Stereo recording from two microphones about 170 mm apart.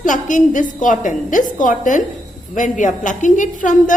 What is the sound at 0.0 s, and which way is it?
A woman's voice, 50° left (ahead or behind).